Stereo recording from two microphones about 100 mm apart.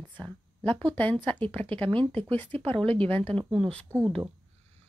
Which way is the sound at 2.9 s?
15° left (ahead or behind).